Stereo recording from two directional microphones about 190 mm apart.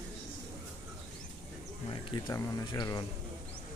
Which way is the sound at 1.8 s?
20° left (ahead or behind).